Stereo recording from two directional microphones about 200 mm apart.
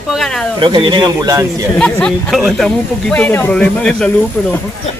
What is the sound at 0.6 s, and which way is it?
Speech, 25° right (ahead or behind).